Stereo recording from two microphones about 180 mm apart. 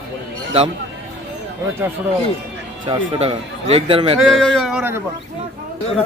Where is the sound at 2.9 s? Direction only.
35° right (ahead or behind).